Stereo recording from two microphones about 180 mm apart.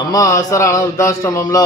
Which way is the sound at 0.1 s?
20° left (ahead or behind).